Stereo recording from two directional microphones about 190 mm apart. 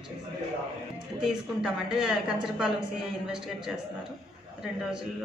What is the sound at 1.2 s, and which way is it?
A woman's voice, 5° right (ahead or behind).